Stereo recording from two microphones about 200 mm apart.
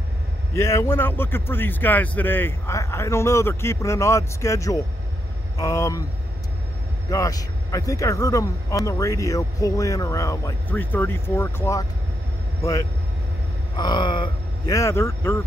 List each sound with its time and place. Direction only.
0.6 s a man's voice: 15° left (ahead or behind)
7.1 s a man's voice: 15° left (ahead or behind)
13.7 s speech: 20° left (ahead or behind)